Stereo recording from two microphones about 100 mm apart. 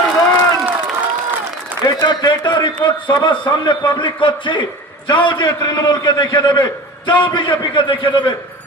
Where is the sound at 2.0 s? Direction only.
50° left (ahead or behind).